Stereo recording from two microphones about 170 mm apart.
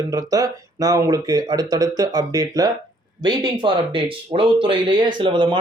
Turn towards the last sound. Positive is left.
turn(degrees=-30)  # may be behind; listen again after turning